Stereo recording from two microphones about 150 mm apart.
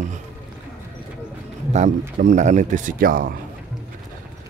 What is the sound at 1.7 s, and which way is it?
Speech, 55° right (ahead or behind).